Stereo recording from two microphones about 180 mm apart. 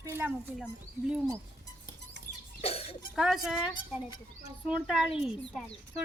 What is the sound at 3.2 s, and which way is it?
Speech, 5° right (ahead or behind).